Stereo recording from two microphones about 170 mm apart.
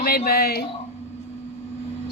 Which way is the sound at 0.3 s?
65° left (ahead or behind).